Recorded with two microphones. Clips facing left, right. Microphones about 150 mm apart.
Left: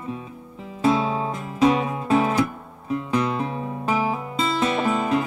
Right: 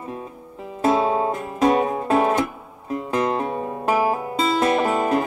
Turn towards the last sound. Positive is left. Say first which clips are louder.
# right 2 dB
turn(degrees=-45)  # may be behind; listen again after turning